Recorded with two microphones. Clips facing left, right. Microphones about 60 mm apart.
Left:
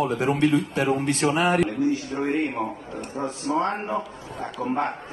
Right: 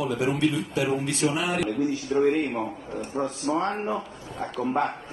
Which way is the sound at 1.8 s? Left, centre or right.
Left.